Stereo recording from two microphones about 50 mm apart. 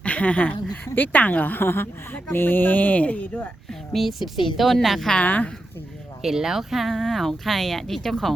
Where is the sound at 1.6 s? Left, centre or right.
Left.